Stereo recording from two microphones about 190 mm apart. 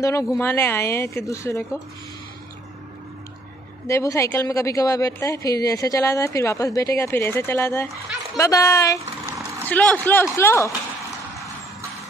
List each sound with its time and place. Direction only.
0.0 s a woman's voice: 15° left (ahead or behind)
3.8 s a woman's voice: 15° left (ahead or behind)